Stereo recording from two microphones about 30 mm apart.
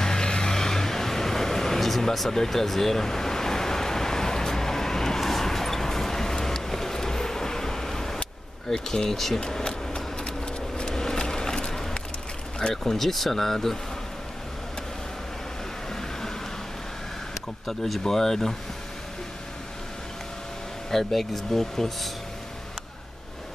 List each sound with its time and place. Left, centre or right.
0.0 s vehicle: left
8.6 s speech: centre
9.1 s speech: centre
9.4 s a sound: left
12.8 s speech: centre
15.9 s vehicle: centre
17.6 s speech: centre
20.9 s speech: centre